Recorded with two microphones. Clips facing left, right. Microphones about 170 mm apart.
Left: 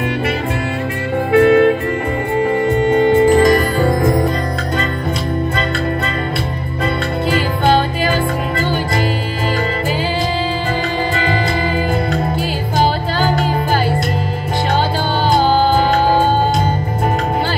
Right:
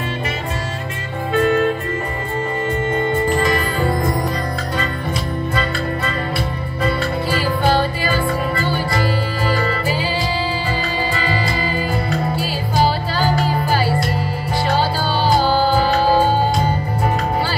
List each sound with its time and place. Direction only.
1.3 s music: 70° left (ahead or behind)
2.8 s music: 70° left (ahead or behind)
3.4 s music: 40° left (ahead or behind)
12.1 s music: 50° left (ahead or behind)